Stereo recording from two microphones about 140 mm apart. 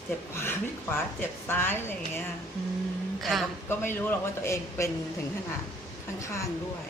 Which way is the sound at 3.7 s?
15° left (ahead or behind).